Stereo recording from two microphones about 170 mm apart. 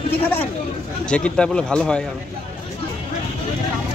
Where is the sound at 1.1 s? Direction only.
5° left (ahead or behind).